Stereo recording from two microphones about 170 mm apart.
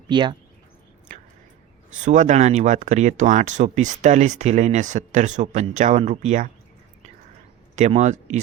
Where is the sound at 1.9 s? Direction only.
45° right (ahead or behind).